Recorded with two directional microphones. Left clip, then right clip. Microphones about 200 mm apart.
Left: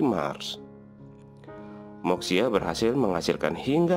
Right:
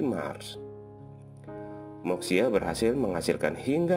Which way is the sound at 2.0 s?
25° left (ahead or behind).